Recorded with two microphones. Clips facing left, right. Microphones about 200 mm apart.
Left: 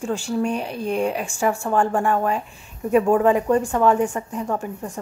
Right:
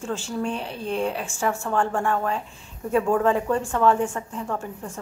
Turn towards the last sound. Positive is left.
turn(degrees=15)  # may be behind; listen again after turning